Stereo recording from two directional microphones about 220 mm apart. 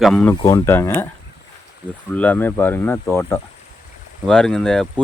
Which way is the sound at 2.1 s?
5° left (ahead or behind).